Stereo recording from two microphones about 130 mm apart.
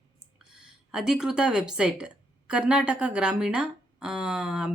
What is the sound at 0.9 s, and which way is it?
A woman's voice, 5° right (ahead or behind).